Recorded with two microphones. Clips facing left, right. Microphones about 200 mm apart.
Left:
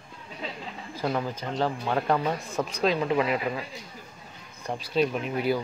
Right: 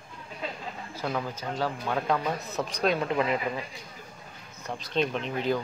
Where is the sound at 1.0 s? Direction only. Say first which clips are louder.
Left 3 dB; 15° left (ahead or behind).